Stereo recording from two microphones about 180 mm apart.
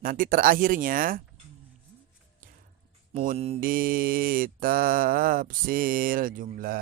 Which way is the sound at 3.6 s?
55° right (ahead or behind).